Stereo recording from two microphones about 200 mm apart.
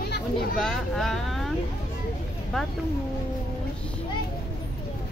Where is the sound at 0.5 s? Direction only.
Centre (ahead or behind).